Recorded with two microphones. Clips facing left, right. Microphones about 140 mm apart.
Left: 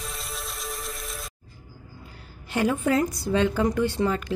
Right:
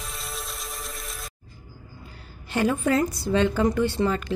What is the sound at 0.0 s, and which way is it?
Music, centre (ahead or behind).